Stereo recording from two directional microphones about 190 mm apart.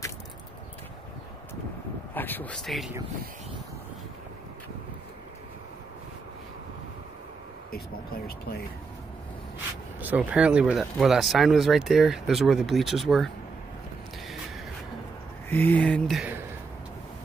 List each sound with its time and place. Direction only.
2.1 s speech: 10° left (ahead or behind)
7.7 s speech: 55° left (ahead or behind)
9.9 s speech: 10° right (ahead or behind)
15.5 s speech: 10° left (ahead or behind)